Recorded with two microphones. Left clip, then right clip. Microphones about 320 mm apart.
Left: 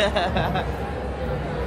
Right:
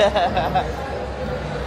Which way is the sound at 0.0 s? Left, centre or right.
Centre.